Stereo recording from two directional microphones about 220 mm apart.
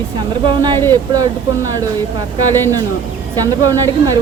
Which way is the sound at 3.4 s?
15° right (ahead or behind).